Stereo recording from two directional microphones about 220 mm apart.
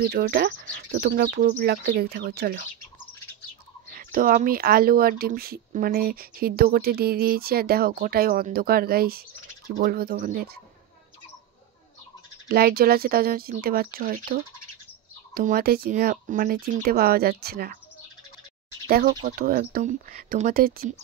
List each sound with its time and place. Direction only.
0.0 s speech: 45° right (ahead or behind)
3.9 s speech: 40° right (ahead or behind)
12.4 s speech: 45° right (ahead or behind)
18.9 s speech: 40° right (ahead or behind)